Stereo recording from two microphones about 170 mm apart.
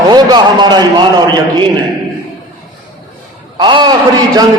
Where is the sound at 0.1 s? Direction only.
25° right (ahead or behind).